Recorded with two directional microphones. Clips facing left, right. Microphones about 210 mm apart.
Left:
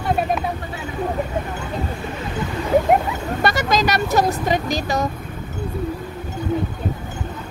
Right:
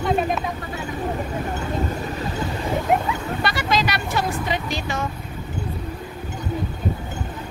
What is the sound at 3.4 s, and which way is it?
Vehicle, 45° left (ahead or behind).